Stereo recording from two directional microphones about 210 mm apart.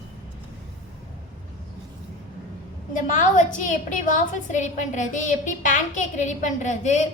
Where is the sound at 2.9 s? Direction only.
40° left (ahead or behind).